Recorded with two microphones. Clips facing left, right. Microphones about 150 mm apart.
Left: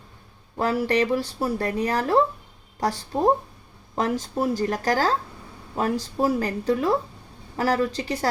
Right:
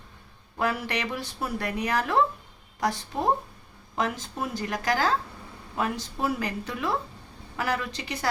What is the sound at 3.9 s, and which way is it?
A woman's voice, 35° left (ahead or behind).